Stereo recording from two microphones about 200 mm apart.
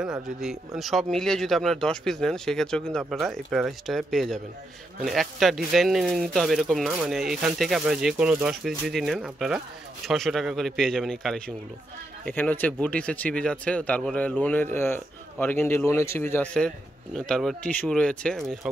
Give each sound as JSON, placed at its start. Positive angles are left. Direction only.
{"t": 0.7, "sound": "speech", "side_deg": 0}